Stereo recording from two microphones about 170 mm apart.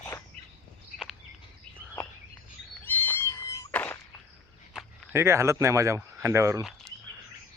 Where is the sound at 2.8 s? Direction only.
10° left (ahead or behind).